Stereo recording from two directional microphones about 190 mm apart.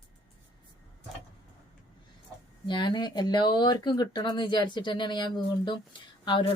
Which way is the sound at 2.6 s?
25° left (ahead or behind).